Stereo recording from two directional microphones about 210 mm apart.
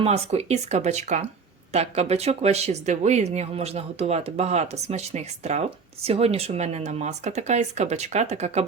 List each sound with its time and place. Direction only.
0.0 s speech: 30° right (ahead or behind)